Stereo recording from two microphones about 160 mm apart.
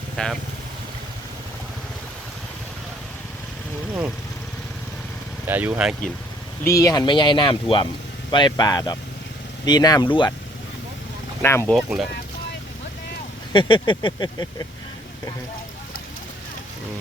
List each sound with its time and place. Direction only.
0.2 s speech: 5° left (ahead or behind)
5.5 s speech: 10° right (ahead or behind)
6.7 s speech: 20° left (ahead or behind)
11.4 s speech: 15° left (ahead or behind)
11.7 s speech: centre (ahead or behind)
13.5 s speech: 30° left (ahead or behind)